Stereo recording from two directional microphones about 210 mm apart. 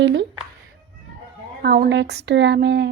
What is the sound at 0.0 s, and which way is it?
Meow, 55° right (ahead or behind).